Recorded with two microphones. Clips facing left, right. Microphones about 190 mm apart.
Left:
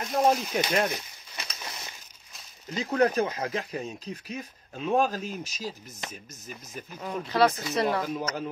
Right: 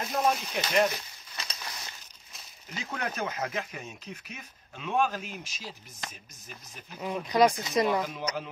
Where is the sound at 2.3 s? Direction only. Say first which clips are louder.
Even; centre (ahead or behind).